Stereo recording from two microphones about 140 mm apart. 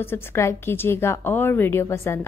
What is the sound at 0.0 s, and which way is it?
A woman's voice, 15° left (ahead or behind).